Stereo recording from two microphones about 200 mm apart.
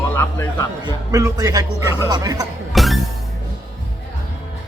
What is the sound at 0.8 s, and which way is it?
A woman's voice, 15° right (ahead or behind).